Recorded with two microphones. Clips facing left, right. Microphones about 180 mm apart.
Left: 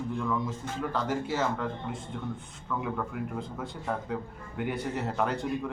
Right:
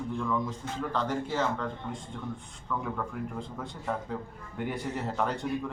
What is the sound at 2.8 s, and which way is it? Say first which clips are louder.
A man's voice: left 4 dB; 5° left (ahead or behind).